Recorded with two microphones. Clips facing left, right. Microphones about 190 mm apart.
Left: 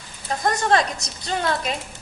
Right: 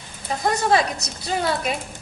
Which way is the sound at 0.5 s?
5° right (ahead or behind).